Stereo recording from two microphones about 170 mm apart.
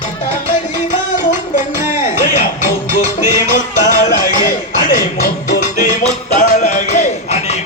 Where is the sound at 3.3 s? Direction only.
50° left (ahead or behind).